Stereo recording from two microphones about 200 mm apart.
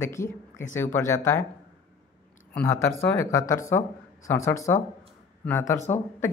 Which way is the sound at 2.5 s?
10° left (ahead or behind).